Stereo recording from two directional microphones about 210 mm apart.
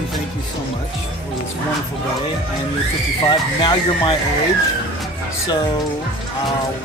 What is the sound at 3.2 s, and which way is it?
Speech, 20° left (ahead or behind).